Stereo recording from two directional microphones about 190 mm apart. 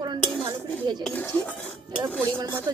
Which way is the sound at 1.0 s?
10° left (ahead or behind).